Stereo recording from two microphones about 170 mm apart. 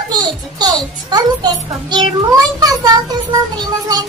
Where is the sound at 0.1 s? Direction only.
25° right (ahead or behind).